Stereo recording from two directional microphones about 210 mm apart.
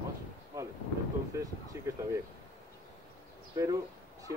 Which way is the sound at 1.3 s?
15° right (ahead or behind).